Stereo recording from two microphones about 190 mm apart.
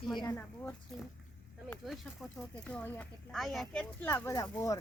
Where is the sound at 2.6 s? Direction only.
5° left (ahead or behind).